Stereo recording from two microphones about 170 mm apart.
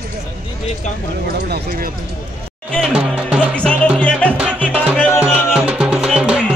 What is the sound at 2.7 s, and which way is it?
Music, centre (ahead or behind).